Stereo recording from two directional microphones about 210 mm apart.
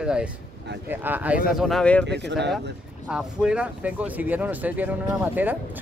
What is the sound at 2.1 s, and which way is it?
Speech, 55° right (ahead or behind).